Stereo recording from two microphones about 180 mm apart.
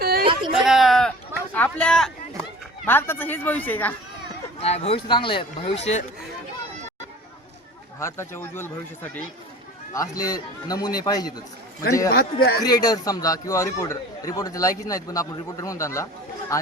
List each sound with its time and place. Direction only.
0.0 s a sound: 60° right (ahead or behind)
0.5 s a sound: centre (ahead or behind)
1.5 s a man's voice: 10° left (ahead or behind)
4.6 s speech: 35° left (ahead or behind)
7.9 s a man's voice: 15° left (ahead or behind)
9.9 s a man's voice: 20° left (ahead or behind)
12.0 s speech: 60° left (ahead or behind)
12.6 s a man's voice: 20° left (ahead or behind)